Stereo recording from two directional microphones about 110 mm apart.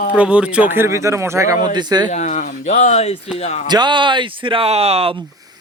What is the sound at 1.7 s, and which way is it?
Speech, 40° right (ahead or behind).